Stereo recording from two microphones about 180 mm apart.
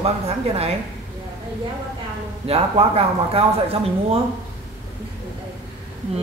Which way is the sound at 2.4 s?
35° right (ahead or behind).